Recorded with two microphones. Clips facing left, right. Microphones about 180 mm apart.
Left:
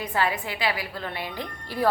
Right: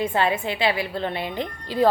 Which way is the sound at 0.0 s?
25° right (ahead or behind).